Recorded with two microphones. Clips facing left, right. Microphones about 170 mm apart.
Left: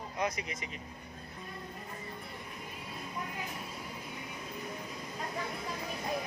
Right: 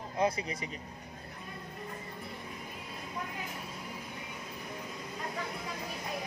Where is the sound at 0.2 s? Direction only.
30° right (ahead or behind).